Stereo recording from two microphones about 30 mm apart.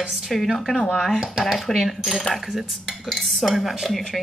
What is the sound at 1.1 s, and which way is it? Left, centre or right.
Dishes, centre.